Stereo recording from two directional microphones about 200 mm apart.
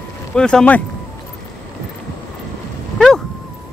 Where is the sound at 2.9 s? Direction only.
5° left (ahead or behind).